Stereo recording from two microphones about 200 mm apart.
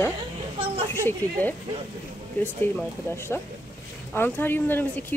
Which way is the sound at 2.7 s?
10° left (ahead or behind).